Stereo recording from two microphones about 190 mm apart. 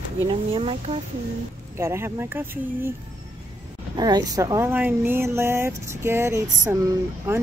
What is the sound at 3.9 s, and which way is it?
Speech, 20° right (ahead or behind).